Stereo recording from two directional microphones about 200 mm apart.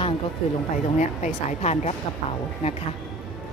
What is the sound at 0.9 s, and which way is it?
Speech, 35° left (ahead or behind).